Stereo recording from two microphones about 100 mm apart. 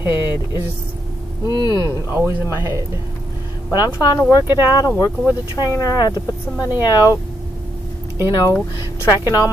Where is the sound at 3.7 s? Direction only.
35° left (ahead or behind).